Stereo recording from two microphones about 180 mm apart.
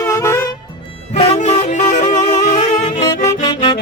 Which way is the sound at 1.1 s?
35° left (ahead or behind).